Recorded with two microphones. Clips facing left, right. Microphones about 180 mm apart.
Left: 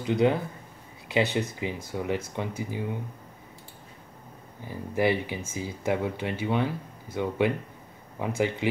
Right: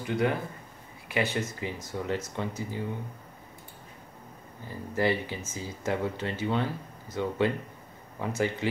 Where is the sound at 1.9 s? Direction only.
15° left (ahead or behind).